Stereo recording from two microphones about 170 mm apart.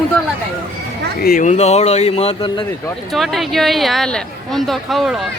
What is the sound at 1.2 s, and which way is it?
Speech, 55° left (ahead or behind).